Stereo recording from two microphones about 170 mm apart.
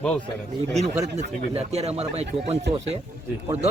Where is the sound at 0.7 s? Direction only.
40° right (ahead or behind).